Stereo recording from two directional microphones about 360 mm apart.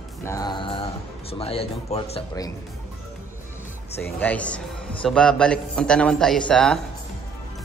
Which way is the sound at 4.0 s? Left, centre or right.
Centre.